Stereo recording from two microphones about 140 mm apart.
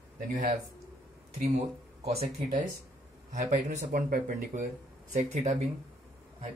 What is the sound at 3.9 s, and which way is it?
Speech, 85° right.